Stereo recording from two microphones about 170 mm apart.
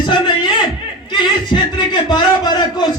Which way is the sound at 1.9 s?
25° left (ahead or behind).